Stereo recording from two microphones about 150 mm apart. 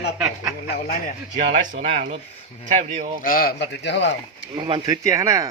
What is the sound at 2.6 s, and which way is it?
Speech, 50° right (ahead or behind).